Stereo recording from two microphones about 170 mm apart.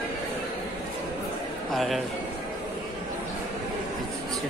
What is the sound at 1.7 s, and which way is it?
Speech, centre (ahead or behind).